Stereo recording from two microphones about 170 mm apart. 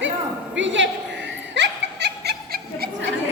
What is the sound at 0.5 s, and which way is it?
Snicker, 90° right.